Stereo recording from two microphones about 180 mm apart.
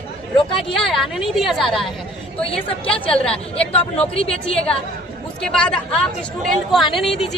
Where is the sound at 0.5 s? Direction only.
Centre (ahead or behind).